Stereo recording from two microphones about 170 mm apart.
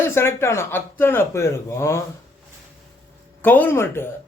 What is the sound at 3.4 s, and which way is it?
Speech, 10° left (ahead or behind).